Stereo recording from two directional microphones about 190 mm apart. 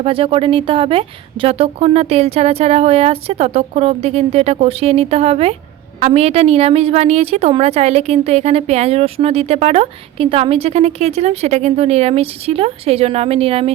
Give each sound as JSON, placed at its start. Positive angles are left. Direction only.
{"t": 0.0, "sound": "a woman's voice", "side_deg": -30}